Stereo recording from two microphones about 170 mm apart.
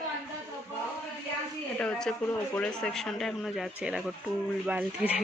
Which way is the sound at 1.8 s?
5° left (ahead or behind).